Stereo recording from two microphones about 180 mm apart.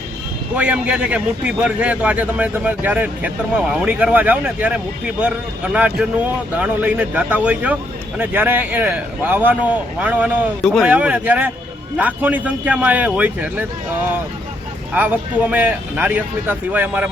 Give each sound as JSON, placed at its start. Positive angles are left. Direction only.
{"t": 0.5, "sound": "a man's voice", "side_deg": -5}
{"t": 14.9, "sound": "a man's voice", "side_deg": -10}